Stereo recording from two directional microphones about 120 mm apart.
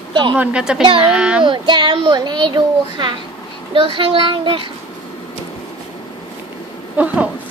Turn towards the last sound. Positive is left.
turn(degrees=-15)  # may be behind; listen again after turning